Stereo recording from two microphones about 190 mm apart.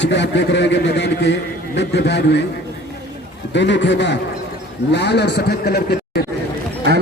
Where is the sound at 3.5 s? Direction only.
70° left (ahead or behind).